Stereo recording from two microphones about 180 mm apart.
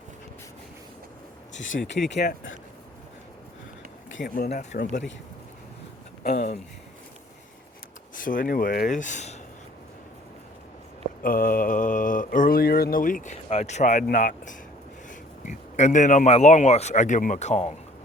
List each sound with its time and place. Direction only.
1.5 s speech: 90° left
2.0 s speech: 70° left (ahead or behind)
4.4 s mantra: 45° left (ahead or behind)
6.2 s speech: 55° left (ahead or behind)
8.2 s mantra: 50° left (ahead or behind)
11.2 s mantra: 50° left (ahead or behind)
15.4 s a man's voice: 40° left (ahead or behind)